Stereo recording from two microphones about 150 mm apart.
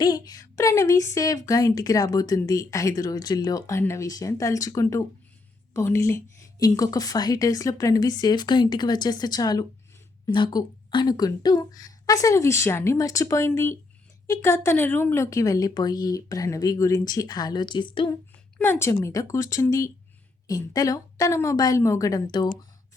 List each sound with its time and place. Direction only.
0.0 s a woman's voice: 25° left (ahead or behind)
18.5 s a woman's voice: 15° left (ahead or behind)